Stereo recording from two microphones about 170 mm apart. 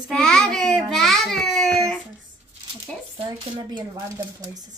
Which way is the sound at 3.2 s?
25° right (ahead or behind).